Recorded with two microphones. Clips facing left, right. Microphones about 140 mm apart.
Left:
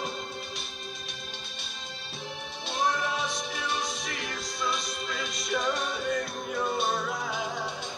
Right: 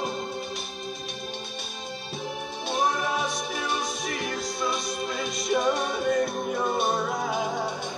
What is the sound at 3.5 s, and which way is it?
Music, 45° right (ahead or behind).